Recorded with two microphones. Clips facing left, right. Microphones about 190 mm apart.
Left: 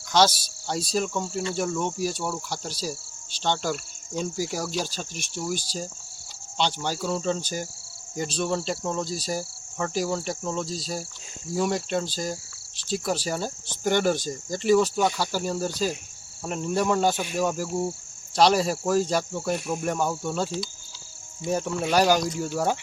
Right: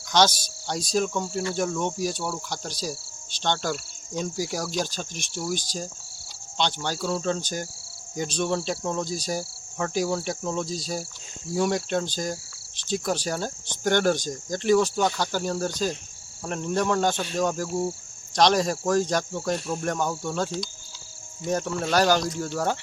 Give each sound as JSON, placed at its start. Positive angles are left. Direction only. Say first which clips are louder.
{"t": 0.1, "sound": "speech", "louder": "even", "side_deg": 5}